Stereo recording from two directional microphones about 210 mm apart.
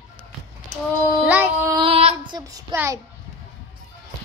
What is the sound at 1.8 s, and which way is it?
Child singing, 25° right (ahead or behind).